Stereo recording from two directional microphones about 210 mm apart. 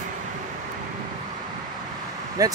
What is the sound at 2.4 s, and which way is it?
Speech, 15° right (ahead or behind).